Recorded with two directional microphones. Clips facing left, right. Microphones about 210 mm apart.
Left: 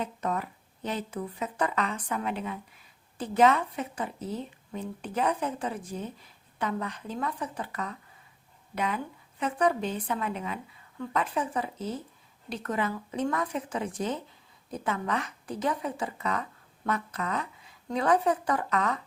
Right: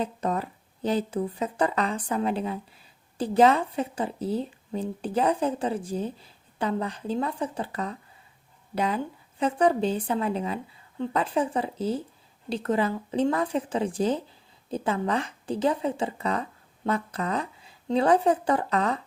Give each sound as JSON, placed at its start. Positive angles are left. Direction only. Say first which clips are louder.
{"t": 0.0, "sound": "a woman's voice", "louder": "right 4 dB", "side_deg": -30}